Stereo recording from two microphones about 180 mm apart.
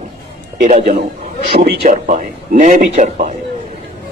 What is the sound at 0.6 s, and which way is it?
A man's voice, 45° right (ahead or behind).